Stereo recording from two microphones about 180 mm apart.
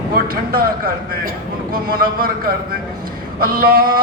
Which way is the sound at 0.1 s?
55° right (ahead or behind).